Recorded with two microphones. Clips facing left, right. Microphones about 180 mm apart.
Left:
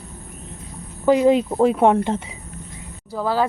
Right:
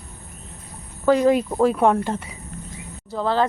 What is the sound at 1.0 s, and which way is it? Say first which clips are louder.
Speech: left 2 dB; 15° left (ahead or behind).